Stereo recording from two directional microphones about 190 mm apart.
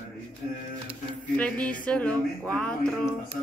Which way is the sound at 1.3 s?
5° left (ahead or behind).